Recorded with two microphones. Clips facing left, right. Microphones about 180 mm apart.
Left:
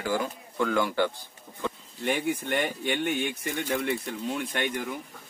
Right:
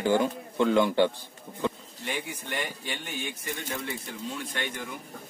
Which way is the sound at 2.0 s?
55° left (ahead or behind).